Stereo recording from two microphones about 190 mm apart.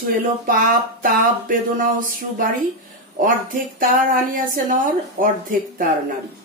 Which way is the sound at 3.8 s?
45° right (ahead or behind).